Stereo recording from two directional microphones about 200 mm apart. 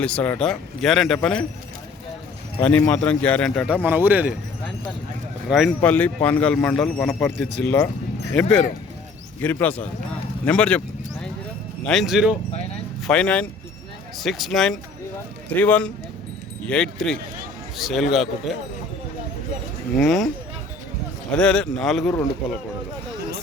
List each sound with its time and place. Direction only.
0.0 s speech: 5° left (ahead or behind)
2.6 s speech: 5° left (ahead or behind)
3.8 s speech: 10° right (ahead or behind)
5.5 s speech: centre (ahead or behind)
9.4 s speech: 10° left (ahead or behind)
10.4 s a sound: 5° left (ahead or behind)
11.8 s speech: centre (ahead or behind)
20.0 s speech: centre (ahead or behind)
21.3 s speech: 5° left (ahead or behind)